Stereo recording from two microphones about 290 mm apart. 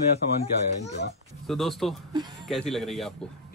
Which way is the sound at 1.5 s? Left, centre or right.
Centre.